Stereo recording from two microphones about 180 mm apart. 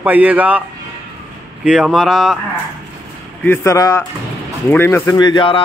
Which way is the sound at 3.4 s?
10° left (ahead or behind).